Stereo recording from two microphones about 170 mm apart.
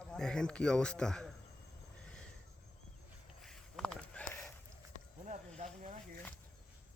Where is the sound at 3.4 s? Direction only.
Centre (ahead or behind).